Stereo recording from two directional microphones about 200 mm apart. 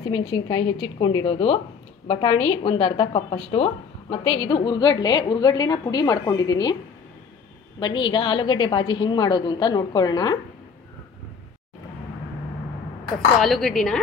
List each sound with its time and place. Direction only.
0.0 s a woman's voice: 25° left (ahead or behind)
7.8 s a woman's voice: 25° left (ahead or behind)
13.4 s speech: centre (ahead or behind)